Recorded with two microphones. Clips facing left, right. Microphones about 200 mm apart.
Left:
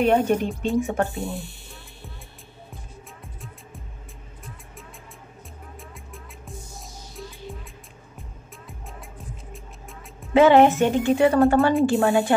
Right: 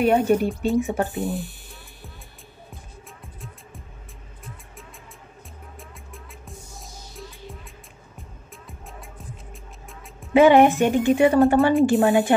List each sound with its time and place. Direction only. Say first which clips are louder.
0.0 s speech: right 1 dB; 10° right (ahead or behind)
1.2 s music: right 4 dB; centre (ahead or behind)
5.8 s music: left 1 dB; centre (ahead or behind)
10.3 s a woman's voice: right 1 dB; 15° right (ahead or behind)